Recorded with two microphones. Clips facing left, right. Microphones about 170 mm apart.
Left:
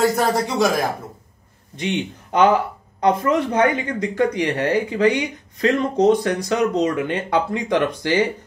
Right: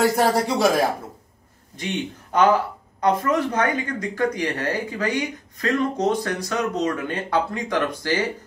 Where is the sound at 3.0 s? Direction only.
20° left (ahead or behind).